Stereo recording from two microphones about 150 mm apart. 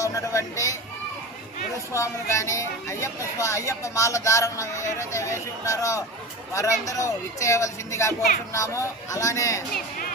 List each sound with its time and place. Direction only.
0.0 s speech: 20° left (ahead or behind)
1.9 s speech: 20° left (ahead or behind)